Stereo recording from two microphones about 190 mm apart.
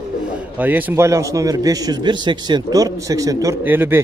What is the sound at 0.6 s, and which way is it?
A man's voice, 10° right (ahead or behind).